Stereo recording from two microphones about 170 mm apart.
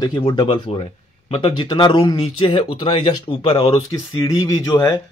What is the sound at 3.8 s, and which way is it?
Speech, 20° left (ahead or behind).